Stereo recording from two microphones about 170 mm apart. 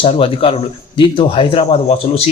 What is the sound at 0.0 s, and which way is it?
Speech, 35° left (ahead or behind).